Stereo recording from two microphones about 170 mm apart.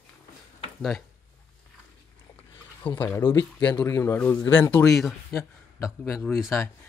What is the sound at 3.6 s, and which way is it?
Speech, 10° left (ahead or behind).